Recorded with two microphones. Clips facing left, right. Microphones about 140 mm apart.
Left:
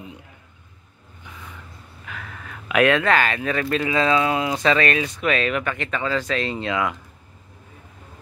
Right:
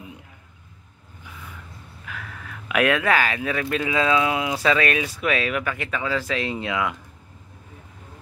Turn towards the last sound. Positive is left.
turn(degrees=-10)  # may be behind; listen again after turning